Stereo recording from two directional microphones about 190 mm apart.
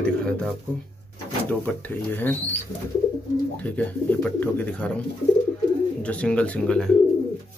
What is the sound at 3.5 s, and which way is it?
Speech, 10° left (ahead or behind).